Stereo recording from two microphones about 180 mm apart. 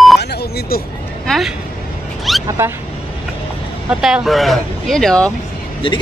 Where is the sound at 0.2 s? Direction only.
65° left (ahead or behind).